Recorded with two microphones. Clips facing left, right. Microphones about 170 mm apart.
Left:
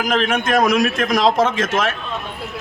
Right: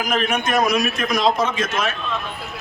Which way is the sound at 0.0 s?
90° left.